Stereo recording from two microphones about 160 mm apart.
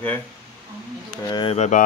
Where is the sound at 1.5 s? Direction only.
45° left (ahead or behind).